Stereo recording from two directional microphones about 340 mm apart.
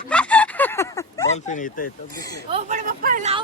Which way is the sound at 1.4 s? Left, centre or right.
Left.